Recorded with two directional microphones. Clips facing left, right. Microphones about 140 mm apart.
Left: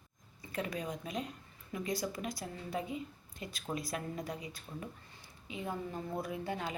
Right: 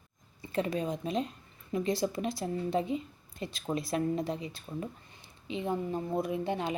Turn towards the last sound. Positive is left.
turn(degrees=-25)  # may be behind; listen again after turning